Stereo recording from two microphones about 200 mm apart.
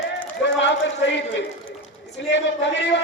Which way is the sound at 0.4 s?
65° left (ahead or behind).